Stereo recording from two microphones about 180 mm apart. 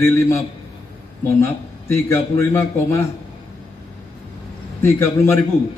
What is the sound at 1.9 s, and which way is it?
A man's voice, 15° left (ahead or behind).